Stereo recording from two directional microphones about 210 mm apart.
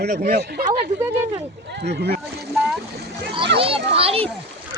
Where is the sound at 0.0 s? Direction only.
40° right (ahead or behind).